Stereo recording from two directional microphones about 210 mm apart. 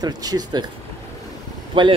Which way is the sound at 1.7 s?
25° right (ahead or behind).